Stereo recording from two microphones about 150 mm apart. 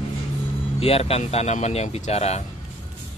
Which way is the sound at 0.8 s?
40° left (ahead or behind).